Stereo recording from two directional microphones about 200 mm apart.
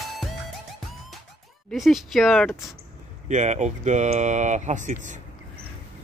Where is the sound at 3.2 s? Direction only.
35° right (ahead or behind).